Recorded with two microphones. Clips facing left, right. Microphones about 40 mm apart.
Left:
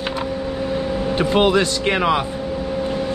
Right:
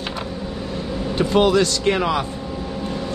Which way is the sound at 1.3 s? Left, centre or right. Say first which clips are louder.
Right 1 dB; left.